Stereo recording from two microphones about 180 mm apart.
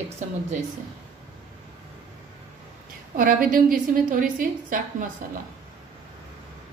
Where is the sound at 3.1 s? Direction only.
50° right (ahead or behind).